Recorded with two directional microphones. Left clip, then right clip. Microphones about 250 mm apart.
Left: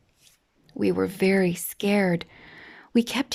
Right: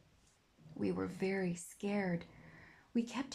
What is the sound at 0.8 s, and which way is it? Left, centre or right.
Speech, left.